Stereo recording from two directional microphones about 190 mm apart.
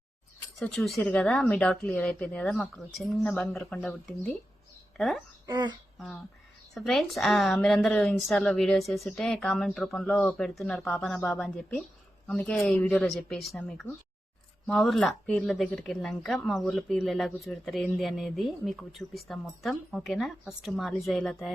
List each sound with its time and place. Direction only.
0.6 s a woman's voice: 5° left (ahead or behind)
5.5 s a sound: 20° right (ahead or behind)
6.7 s speech: centre (ahead or behind)